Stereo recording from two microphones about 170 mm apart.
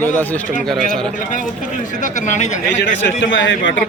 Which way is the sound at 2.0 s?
45° left (ahead or behind).